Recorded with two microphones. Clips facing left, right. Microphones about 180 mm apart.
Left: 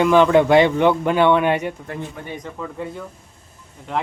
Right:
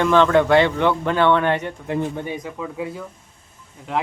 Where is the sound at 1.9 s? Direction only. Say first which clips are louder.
Right 7 dB; 20° right (ahead or behind).